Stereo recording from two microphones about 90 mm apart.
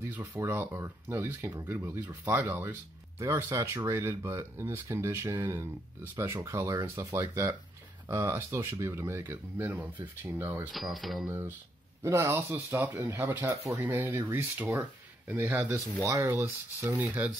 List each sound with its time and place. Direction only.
0.4 s speech: 25° right (ahead or behind)
3.2 s speech: 35° right (ahead or behind)
10.7 s speech: centre (ahead or behind)
11.2 s speech: 20° right (ahead or behind)
14.6 s speech: 20° right (ahead or behind); by 16.3 s 35° right (ahead or behind)
16.3 s speech: 20° right (ahead or behind)